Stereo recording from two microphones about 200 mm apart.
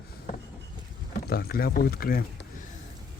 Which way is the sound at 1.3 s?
50° left (ahead or behind).